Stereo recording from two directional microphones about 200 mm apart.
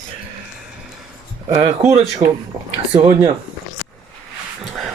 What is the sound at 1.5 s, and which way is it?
Speech, 20° right (ahead or behind).